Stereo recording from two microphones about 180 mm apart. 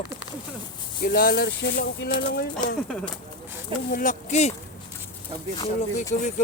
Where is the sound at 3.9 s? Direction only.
50° left (ahead or behind).